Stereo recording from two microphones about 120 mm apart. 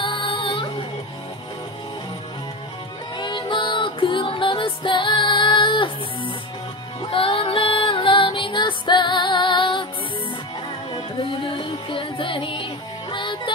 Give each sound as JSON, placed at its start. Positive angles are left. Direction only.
{"t": 0.0, "sound": "child singing", "side_deg": 45}
{"t": 3.2, "sound": "music", "side_deg": 45}
{"t": 10.9, "sound": "music", "side_deg": 50}